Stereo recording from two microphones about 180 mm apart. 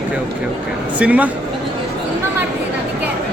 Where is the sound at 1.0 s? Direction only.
10° right (ahead or behind).